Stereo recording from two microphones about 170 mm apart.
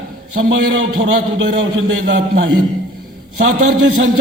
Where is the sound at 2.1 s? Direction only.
90° right.